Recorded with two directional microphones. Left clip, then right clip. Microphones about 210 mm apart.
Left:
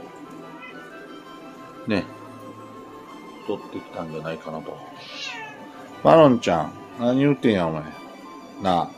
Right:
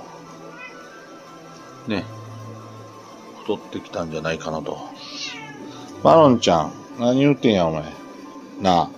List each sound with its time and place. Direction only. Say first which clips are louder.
1.9 s speech: left 2 dB; 5° left (ahead or behind)
3.4 s speech: right 3 dB; 30° right (ahead or behind)
6.0 s speech: right 1 dB; 15° right (ahead or behind)